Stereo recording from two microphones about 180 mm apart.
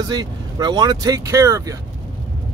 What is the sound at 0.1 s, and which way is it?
Speech, 25° right (ahead or behind).